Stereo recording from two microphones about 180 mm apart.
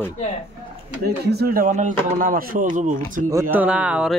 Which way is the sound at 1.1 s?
60° right (ahead or behind).